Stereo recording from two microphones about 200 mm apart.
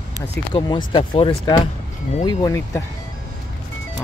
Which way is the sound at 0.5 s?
25° left (ahead or behind).